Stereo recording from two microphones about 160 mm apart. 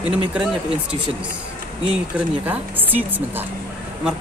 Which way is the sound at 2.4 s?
10° right (ahead or behind).